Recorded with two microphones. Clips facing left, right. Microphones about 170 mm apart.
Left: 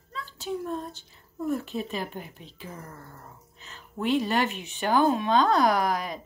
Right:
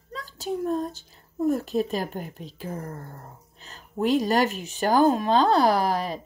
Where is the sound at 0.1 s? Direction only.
40° right (ahead or behind).